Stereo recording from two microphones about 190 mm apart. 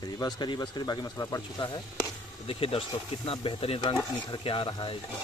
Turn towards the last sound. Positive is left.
turn(degrees=25)  # may be behind; listen again after turning